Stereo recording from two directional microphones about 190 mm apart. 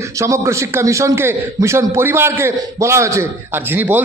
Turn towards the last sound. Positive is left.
turn(degrees=-10)  # may be behind; listen again after turning